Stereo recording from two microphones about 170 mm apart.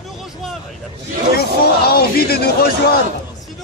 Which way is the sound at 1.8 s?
65° left (ahead or behind).